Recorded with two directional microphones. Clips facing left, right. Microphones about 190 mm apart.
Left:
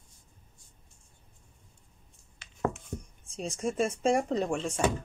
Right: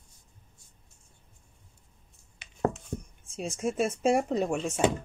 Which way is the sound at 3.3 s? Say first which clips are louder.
Right 1 dB; 5° right (ahead or behind).